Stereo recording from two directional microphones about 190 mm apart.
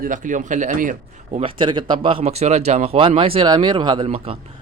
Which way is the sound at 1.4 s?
25° right (ahead or behind).